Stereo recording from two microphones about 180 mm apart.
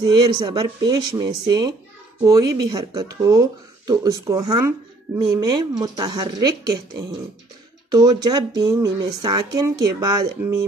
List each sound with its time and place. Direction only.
0.0 s speech: 25° right (ahead or behind)